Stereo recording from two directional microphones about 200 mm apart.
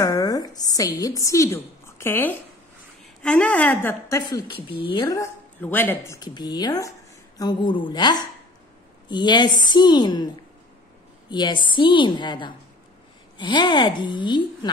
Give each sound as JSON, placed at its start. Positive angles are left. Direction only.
{"t": 0.0, "sound": "a woman's voice", "side_deg": 20}